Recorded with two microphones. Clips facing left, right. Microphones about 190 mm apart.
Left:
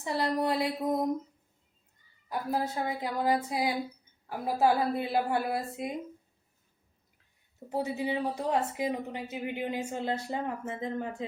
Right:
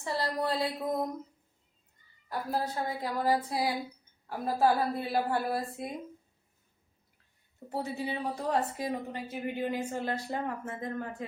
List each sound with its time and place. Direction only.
0.0 s a woman's voice: 20° left (ahead or behind)
2.3 s a woman's voice: 15° left (ahead or behind)
7.7 s a woman's voice: 15° left (ahead or behind)